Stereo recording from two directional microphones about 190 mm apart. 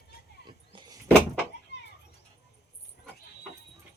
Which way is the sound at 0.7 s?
20° right (ahead or behind).